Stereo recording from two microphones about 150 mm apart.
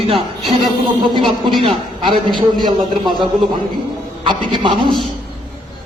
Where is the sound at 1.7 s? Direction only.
35° right (ahead or behind).